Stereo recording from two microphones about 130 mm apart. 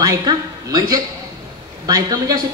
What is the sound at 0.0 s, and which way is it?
A man's voice, 30° right (ahead or behind).